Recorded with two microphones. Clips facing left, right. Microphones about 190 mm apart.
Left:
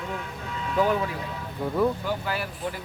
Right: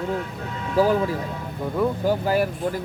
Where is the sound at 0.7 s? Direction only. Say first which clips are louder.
Right 5 dB; 35° right (ahead or behind).